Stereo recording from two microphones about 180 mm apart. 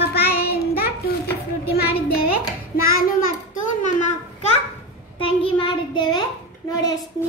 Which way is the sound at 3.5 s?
45° left (ahead or behind).